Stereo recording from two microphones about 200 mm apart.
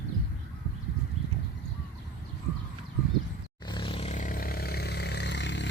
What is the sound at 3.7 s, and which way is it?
Vehicle, 25° left (ahead or behind).